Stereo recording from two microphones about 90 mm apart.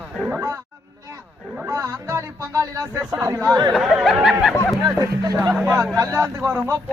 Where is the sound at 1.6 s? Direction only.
35° right (ahead or behind).